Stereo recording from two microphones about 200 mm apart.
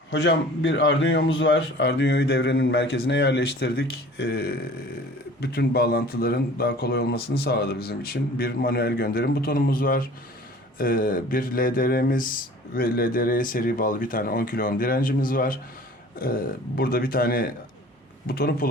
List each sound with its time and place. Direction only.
0.1 s a man's voice: 65° left (ahead or behind); by 18.7 s 50° left (ahead or behind)